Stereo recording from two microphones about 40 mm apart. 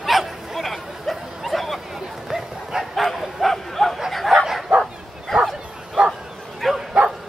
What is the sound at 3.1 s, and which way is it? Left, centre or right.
Bow-wow, centre.